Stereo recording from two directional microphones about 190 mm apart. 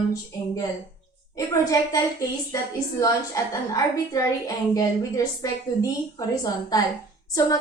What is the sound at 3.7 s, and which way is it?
A woman's voice, 20° left (ahead or behind).